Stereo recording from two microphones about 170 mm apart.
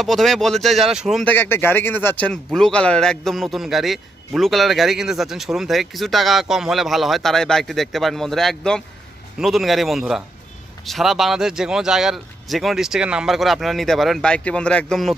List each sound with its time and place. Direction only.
0.0 s a man's voice: centre (ahead or behind)
1.3 s a man's voice: 10° left (ahead or behind)